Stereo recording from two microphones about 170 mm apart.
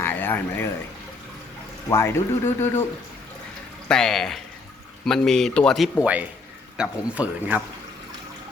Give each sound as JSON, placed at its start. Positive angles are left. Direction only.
{"t": 0.0, "sound": "a sound", "side_deg": 10}
{"t": 1.9, "sound": "speech", "side_deg": 15}
{"t": 3.8, "sound": "speech", "side_deg": 5}